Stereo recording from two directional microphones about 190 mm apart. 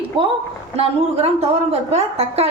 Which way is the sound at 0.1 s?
30° right (ahead or behind).